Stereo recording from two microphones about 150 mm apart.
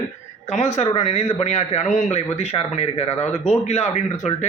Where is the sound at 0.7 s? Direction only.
45° left (ahead or behind).